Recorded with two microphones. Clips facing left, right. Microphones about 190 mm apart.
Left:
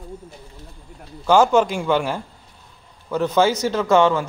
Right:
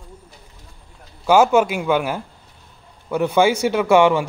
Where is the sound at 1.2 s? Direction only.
10° right (ahead or behind).